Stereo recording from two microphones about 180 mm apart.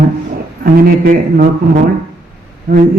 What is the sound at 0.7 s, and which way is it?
A man's voice, 55° right (ahead or behind).